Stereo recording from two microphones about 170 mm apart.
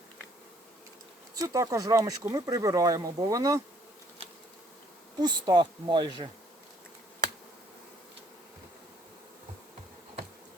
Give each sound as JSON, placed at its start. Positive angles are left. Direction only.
{"t": 1.4, "sound": "speech", "side_deg": -20}
{"t": 5.2, "sound": "speech", "side_deg": -25}